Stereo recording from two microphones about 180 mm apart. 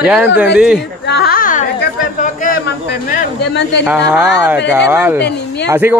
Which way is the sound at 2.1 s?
45° left (ahead or behind).